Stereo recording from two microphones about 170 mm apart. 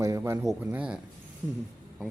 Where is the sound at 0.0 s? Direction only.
15° right (ahead or behind).